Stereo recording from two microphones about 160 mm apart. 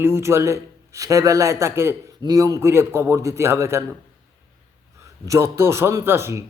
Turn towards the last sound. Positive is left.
turn(degrees=-15)  # may be behind; listen again after turning